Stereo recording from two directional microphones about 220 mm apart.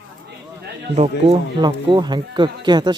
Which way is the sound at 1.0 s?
25° right (ahead or behind).